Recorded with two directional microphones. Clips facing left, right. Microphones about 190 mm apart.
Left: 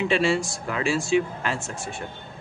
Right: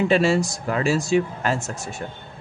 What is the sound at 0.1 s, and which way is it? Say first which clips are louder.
Speech: right 4 dB; 40° right (ahead or behind).